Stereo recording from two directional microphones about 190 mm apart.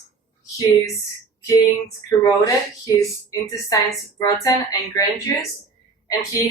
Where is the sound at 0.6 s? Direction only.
15° left (ahead or behind).